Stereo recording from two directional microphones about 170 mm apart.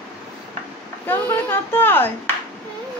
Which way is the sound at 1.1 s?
10° left (ahead or behind).